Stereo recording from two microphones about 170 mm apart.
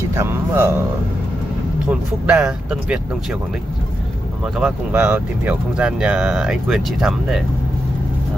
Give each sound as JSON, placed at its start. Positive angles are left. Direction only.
{"t": 0.1, "sound": "speech", "side_deg": -15}
{"t": 1.9, "sound": "speech", "side_deg": -5}
{"t": 4.6, "sound": "speech", "side_deg": -10}